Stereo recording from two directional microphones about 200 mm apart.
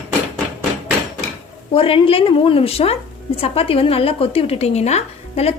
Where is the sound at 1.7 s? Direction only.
25° left (ahead or behind).